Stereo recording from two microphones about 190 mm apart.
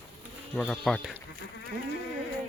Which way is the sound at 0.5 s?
Centre (ahead or behind).